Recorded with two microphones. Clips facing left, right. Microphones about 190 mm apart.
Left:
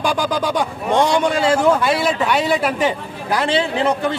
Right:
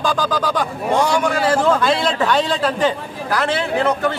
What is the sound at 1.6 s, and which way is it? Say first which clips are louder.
Speech: even; 10° left (ahead or behind).